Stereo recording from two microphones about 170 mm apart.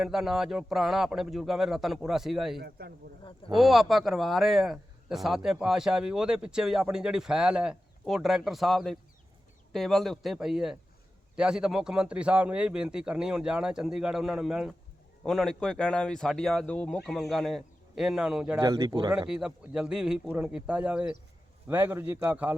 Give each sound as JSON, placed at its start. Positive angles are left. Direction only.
{"t": 0.0, "sound": "speech", "side_deg": 0}
{"t": 2.6, "sound": "speech", "side_deg": -70}
{"t": 3.5, "sound": "speech", "side_deg": 0}
{"t": 18.6, "sound": "speech", "side_deg": -20}
{"t": 19.3, "sound": "a man's voice", "side_deg": -5}